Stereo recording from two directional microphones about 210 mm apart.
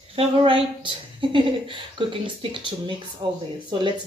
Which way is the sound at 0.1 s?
25° right (ahead or behind).